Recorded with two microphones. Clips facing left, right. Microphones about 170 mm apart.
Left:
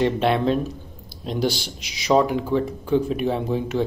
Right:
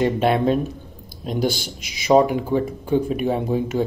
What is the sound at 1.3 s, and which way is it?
A man's voice, 50° right (ahead or behind).